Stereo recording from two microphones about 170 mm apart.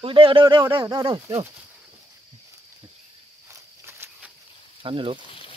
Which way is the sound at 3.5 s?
15° right (ahead or behind).